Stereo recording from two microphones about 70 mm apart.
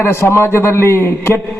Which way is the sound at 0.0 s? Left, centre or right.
Left.